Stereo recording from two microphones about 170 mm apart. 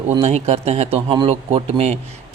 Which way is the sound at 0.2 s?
40° right (ahead or behind).